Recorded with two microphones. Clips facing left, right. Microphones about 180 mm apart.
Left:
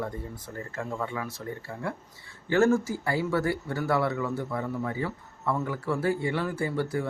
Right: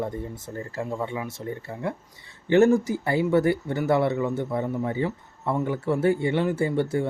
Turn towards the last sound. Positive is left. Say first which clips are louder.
# right 5 dB
turn(degrees=-25)  # may be behind; listen again after turning